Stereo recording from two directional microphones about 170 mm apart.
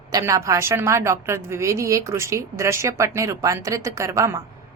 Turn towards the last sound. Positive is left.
turn(degrees=-20)  # may be behind; listen again after turning